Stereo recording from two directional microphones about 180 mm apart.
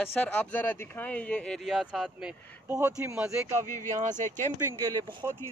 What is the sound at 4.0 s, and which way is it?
Speech, 45° right (ahead or behind).